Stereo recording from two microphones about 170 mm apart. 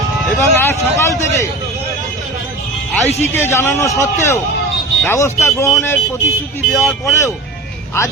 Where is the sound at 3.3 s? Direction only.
15° left (ahead or behind).